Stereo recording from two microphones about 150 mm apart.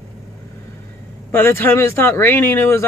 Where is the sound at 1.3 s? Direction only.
15° left (ahead or behind).